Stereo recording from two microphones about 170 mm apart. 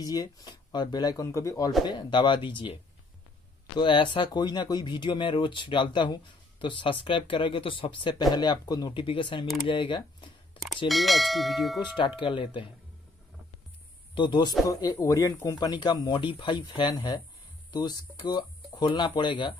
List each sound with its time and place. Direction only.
0.0 s speech: 20° left (ahead or behind)
9.7 s a sound: 30° left (ahead or behind)
10.9 s speech: centre (ahead or behind)
12.2 s speech: 30° left (ahead or behind)
14.1 s speech: 30° left (ahead or behind)